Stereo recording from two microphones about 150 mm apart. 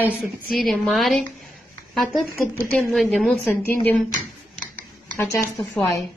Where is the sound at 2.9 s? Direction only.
Centre (ahead or behind).